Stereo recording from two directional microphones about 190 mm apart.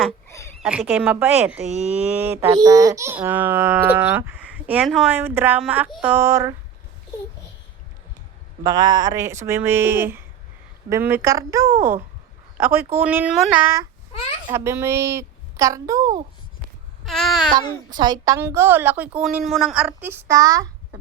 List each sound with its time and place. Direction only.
0.3 s a sound: 15° left (ahead or behind)
0.6 s a woman's voice: 10° right (ahead or behind)
1.6 s speech: 35° right (ahead or behind)
2.0 s a woman's voice: 10° right (ahead or behind)
8.6 s a woman's voice: 20° right (ahead or behind)
17.1 s child singing: centre (ahead or behind)
17.9 s a woman's voice: 20° right (ahead or behind)